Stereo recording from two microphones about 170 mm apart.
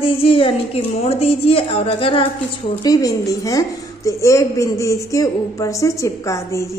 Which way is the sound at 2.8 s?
20° left (ahead or behind).